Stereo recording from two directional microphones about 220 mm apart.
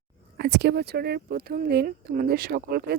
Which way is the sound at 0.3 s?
50° right (ahead or behind).